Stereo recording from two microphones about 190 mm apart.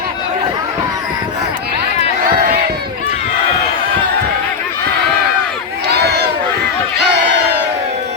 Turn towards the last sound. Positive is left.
turn(degrees=-60)  # may be behind; listen again after turning